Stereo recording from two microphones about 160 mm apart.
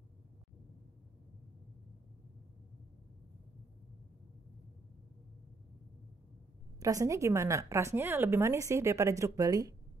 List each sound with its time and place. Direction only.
6.8 s a woman's voice: 20° right (ahead or behind)